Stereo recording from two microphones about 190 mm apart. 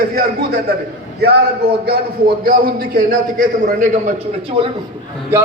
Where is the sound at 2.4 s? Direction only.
50° right (ahead or behind); by 4.7 s 30° right (ahead or behind).